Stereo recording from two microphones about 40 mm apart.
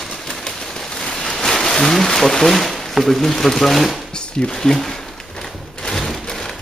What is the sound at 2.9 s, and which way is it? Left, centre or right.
Speech, centre.